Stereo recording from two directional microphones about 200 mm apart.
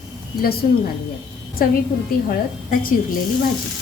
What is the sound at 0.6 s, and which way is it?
A woman's voice, 40° left (ahead or behind).